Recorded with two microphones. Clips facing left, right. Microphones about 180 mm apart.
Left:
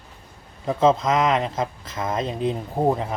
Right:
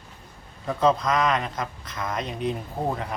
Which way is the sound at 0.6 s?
25° left (ahead or behind).